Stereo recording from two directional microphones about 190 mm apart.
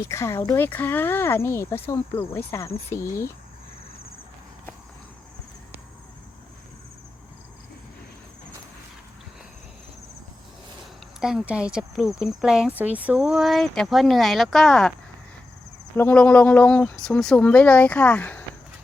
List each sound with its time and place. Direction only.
0.1 s speech: 15° left (ahead or behind)
11.2 s speech: 5° right (ahead or behind)
16.0 s speech: 10° left (ahead or behind)